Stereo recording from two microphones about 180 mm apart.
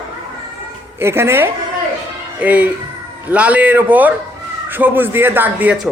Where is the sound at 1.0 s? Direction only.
15° right (ahead or behind).